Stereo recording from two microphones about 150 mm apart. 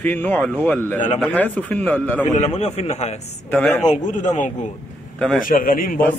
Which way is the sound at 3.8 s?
55° left (ahead or behind).